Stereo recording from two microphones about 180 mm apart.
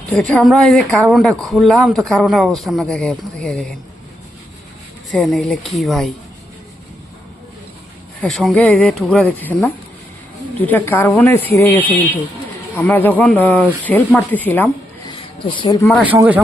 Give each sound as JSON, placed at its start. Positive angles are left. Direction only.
{"t": 0.1, "sound": "a man's voice", "side_deg": 5}
{"t": 5.1, "sound": "a man's voice", "side_deg": 0}
{"t": 8.2, "sound": "speech", "side_deg": 0}
{"t": 15.1, "sound": "a sound", "side_deg": 30}
{"t": 16.1, "sound": "a man's voice", "side_deg": -10}